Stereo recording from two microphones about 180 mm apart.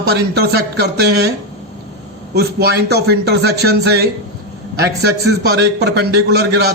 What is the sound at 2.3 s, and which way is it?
A man's voice, 60° right (ahead or behind).